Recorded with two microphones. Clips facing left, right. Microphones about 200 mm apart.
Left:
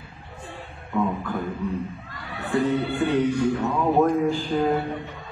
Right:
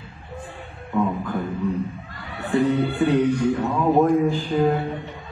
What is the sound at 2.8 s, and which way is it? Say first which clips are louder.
Music: right 3 dB; 15° right (ahead or behind).